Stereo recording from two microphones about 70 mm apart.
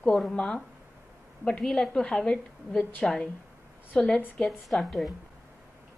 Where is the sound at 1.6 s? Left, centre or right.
Centre.